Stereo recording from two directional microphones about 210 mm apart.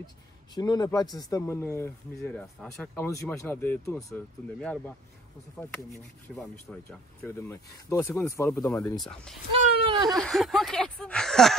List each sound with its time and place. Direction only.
0.6 s speech: 20° left (ahead or behind)
6.2 s speech: 5° left (ahead or behind)
9.5 s a sound: 25° right (ahead or behind)
10.0 s speech: centre (ahead or behind)